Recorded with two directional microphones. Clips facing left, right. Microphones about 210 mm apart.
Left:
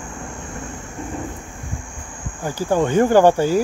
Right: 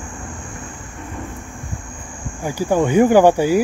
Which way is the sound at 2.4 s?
15° right (ahead or behind).